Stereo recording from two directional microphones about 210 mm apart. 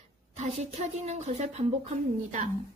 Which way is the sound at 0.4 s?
35° right (ahead or behind).